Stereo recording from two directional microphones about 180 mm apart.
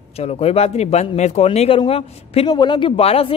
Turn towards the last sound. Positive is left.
turn(degrees=35)  # may be behind; listen again after turning